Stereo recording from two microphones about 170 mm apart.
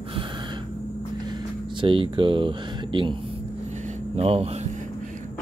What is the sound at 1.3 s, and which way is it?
Speech, 25° right (ahead or behind).